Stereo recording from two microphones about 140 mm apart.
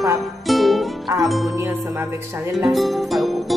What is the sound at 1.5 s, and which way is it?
Music, 20° right (ahead or behind).